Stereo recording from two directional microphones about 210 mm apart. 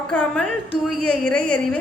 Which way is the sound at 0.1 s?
5° left (ahead or behind).